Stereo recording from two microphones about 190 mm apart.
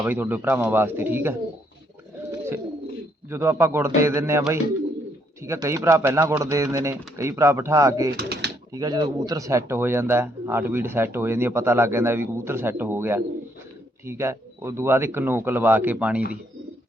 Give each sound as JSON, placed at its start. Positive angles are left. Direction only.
{"t": 0.0, "sound": "speech", "side_deg": -10}
{"t": 3.2, "sound": "speech", "side_deg": -15}
{"t": 8.1, "sound": "a sound", "side_deg": -60}
{"t": 8.7, "sound": "speech", "side_deg": -20}